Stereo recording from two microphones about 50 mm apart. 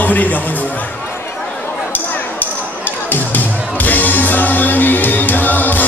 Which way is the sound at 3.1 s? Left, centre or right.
Left.